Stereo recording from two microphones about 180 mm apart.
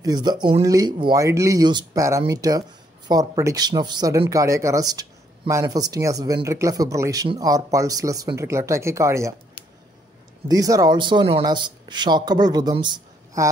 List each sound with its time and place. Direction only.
0.0 s speech: 25° right (ahead or behind)
10.5 s speech: 20° right (ahead or behind)